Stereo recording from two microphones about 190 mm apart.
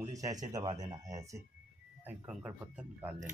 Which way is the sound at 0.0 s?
15° right (ahead or behind).